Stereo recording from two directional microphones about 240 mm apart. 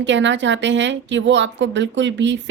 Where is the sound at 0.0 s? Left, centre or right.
Right.